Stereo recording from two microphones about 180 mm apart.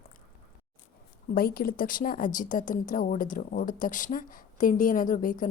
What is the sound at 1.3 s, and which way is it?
A woman's voice, 55° left (ahead or behind).